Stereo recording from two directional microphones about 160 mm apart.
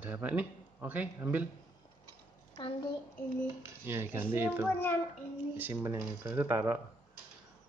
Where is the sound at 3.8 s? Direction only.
15° right (ahead or behind).